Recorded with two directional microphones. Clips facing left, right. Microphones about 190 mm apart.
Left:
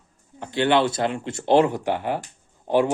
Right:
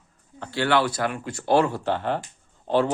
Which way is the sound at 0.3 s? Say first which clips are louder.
Left 3 dB; 20° left (ahead or behind).